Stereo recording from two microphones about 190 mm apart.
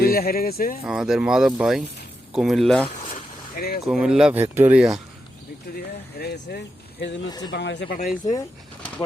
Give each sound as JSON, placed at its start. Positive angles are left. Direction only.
{"t": 0.0, "sound": "speech", "side_deg": 50}
{"t": 0.9, "sound": "speech", "side_deg": -5}
{"t": 3.1, "sound": "vehicle", "side_deg": 50}
{"t": 3.8, "sound": "speech", "side_deg": -5}
{"t": 5.7, "sound": "speech", "side_deg": 55}
{"t": 7.3, "sound": "speech", "side_deg": 20}
{"t": 7.5, "sound": "speech", "side_deg": 65}
{"t": 7.9, "sound": "speech", "side_deg": 45}